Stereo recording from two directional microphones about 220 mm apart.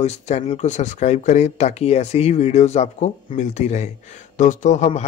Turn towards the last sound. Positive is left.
turn(degrees=30)  # may be behind; listen again after turning